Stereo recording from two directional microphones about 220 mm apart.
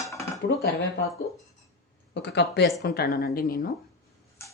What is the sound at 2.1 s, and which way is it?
Speech, 50° left (ahead or behind).